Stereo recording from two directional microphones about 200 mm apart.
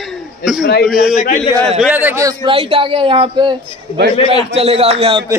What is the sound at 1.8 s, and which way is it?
Speech, 10° right (ahead or behind).